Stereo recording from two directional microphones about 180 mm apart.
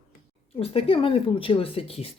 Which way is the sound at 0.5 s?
30° left (ahead or behind).